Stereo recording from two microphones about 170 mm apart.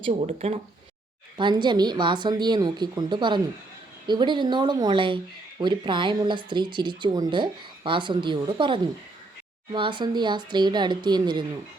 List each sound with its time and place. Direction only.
0.0 s speech: 35° right (ahead or behind)